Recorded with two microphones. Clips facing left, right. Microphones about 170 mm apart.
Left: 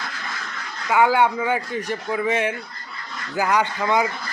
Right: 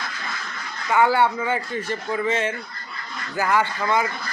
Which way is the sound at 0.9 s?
10° left (ahead or behind).